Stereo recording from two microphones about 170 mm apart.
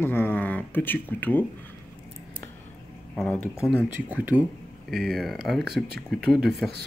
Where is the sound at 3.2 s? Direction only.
Centre (ahead or behind).